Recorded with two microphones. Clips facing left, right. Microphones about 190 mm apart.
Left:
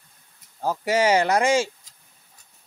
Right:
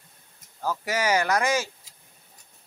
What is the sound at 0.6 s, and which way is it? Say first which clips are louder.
Speech: left 6 dB; 30° left (ahead or behind).